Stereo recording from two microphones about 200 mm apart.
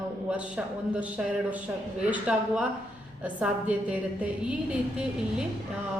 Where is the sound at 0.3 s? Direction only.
5° right (ahead or behind).